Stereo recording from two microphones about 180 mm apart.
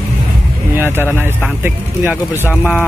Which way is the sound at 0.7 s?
10° right (ahead or behind).